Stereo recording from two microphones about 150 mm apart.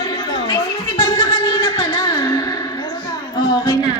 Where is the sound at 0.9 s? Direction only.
25° left (ahead or behind).